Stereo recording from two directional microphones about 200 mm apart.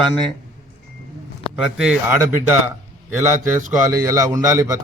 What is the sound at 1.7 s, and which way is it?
Speech, 5° right (ahead or behind).